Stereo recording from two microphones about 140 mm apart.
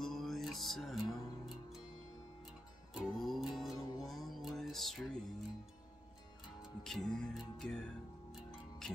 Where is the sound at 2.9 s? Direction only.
Centre (ahead or behind).